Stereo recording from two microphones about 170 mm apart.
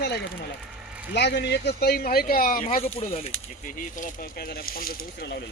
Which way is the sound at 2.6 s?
35° left (ahead or behind).